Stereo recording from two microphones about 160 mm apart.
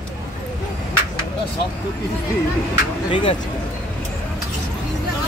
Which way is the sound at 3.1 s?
30° left (ahead or behind).